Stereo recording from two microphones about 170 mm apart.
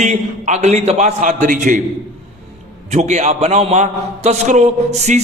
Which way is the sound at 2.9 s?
45° right (ahead or behind).